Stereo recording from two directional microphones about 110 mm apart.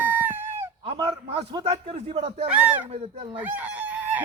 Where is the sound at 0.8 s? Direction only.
55° right (ahead or behind).